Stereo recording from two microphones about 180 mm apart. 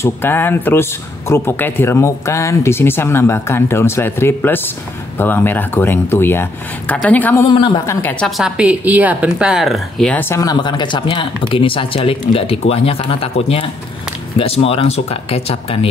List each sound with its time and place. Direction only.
0.0 s speech: 10° left (ahead or behind)
7.4 s speech: 25° left (ahead or behind)
7.8 s speech: 15° left (ahead or behind)
8.4 s speech: 5° right (ahead or behind)
10.3 s speech: 20° left (ahead or behind)